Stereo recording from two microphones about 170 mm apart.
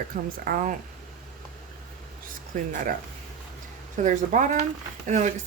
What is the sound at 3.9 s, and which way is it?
Speech, 45° right (ahead or behind).